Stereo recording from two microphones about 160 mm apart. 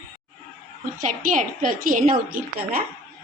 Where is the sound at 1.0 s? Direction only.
55° right (ahead or behind).